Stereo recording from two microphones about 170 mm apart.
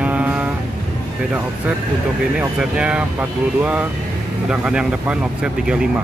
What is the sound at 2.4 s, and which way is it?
Speech, 5° right (ahead or behind).